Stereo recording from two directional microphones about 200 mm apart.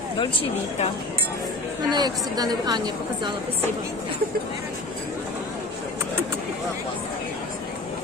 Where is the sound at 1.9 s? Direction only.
20° right (ahead or behind).